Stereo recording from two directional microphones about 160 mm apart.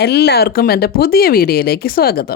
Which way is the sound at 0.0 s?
90° left.